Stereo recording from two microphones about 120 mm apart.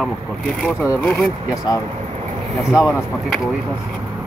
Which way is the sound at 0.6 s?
Centre (ahead or behind).